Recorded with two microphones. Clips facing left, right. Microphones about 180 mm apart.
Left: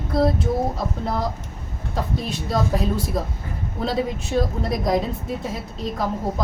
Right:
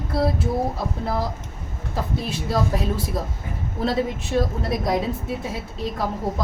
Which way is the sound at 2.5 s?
Centre (ahead or behind).